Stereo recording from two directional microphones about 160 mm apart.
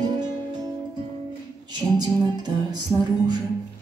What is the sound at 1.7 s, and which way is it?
Music, 25° right (ahead or behind).